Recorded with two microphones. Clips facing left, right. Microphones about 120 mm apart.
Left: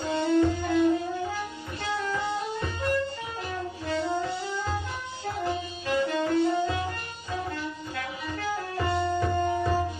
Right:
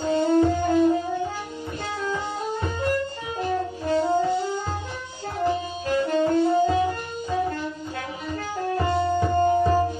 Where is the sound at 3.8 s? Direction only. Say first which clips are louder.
Right 6 dB; 45° right (ahead or behind).